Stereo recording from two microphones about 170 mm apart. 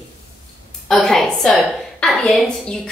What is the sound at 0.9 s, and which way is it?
A woman's voice, centre (ahead or behind).